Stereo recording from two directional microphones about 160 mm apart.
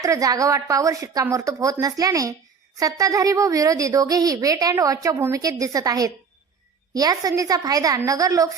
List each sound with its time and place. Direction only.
0.0 s a woman's voice: 20° right (ahead or behind)